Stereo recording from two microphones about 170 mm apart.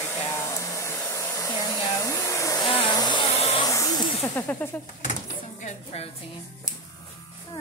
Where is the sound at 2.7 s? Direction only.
30° left (ahead or behind).